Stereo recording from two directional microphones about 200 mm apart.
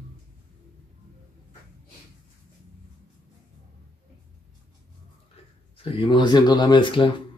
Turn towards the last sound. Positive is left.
turn(degrees=25)  # may be behind; listen again after turning